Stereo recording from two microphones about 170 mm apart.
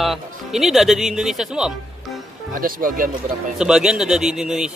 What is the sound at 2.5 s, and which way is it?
Speech, 55° right (ahead or behind).